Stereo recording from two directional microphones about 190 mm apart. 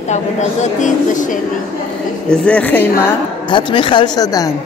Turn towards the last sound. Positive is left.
turn(degrees=20)  # may be behind; listen again after turning